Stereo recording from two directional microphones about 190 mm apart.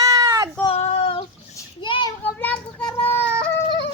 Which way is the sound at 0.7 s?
30° left (ahead or behind).